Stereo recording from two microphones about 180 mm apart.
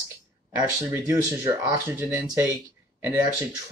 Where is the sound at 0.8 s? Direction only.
15° right (ahead or behind).